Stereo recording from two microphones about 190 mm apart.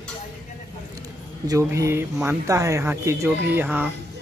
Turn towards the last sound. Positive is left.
turn(degrees=-5)  # may be behind; listen again after turning